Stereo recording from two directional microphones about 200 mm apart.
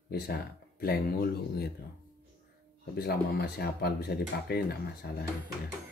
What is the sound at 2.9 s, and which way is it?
Speech, 50° left (ahead or behind).